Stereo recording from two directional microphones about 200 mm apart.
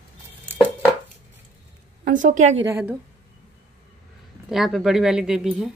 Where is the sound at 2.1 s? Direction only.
40° right (ahead or behind).